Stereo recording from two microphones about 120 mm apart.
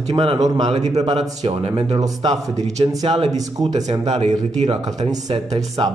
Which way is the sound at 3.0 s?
55° right (ahead or behind).